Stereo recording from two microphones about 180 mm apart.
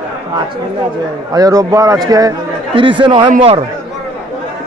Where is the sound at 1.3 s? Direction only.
20° right (ahead or behind).